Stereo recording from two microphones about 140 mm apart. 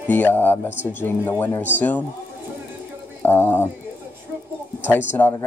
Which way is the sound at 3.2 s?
15° left (ahead or behind).